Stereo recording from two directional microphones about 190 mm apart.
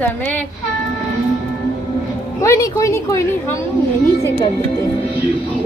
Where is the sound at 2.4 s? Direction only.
15° left (ahead or behind).